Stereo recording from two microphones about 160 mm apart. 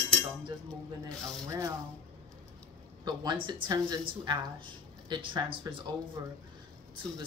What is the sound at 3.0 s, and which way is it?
Speech, 30° right (ahead or behind).